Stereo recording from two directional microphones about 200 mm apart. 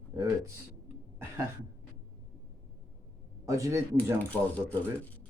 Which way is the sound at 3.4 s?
15° right (ahead or behind).